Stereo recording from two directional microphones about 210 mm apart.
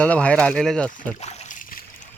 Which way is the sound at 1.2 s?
30° left (ahead or behind).